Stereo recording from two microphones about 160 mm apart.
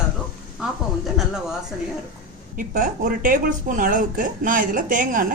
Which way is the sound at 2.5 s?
55° right (ahead or behind).